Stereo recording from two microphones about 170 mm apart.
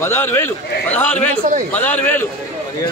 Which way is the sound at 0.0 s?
15° left (ahead or behind).